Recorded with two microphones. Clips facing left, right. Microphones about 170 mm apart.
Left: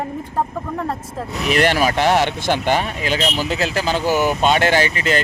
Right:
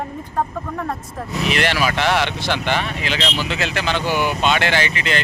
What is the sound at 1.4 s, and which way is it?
Speech, 45° left (ahead or behind).